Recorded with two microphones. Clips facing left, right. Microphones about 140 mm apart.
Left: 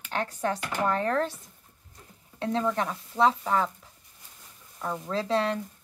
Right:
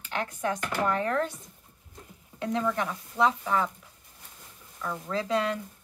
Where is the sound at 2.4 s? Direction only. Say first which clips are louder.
Left 1 dB; 30° left (ahead or behind).